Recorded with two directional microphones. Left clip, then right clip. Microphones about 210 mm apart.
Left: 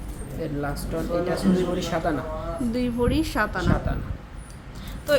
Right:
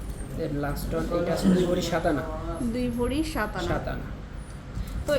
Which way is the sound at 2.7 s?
20° left (ahead or behind).